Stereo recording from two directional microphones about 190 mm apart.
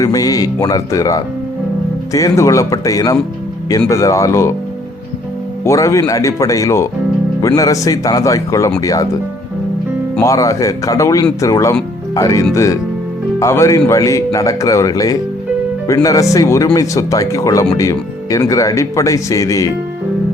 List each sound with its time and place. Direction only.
0.0 s speech: 20° left (ahead or behind)
5.6 s speech: 15° left (ahead or behind)
10.2 s speech: 15° left (ahead or behind)